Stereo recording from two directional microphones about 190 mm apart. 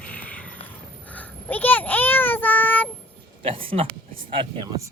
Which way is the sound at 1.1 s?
10° left (ahead or behind).